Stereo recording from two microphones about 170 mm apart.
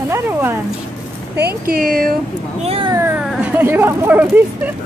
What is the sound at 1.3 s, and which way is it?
Speech, 65° right (ahead or behind).